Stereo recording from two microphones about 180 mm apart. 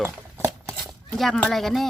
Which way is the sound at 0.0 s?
10° right (ahead or behind).